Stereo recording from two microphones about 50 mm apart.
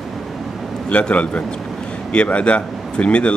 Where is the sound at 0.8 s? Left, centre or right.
Left.